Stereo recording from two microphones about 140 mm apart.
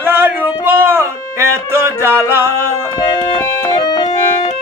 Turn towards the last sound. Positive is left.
turn(degrees=35)  # may be behind; listen again after turning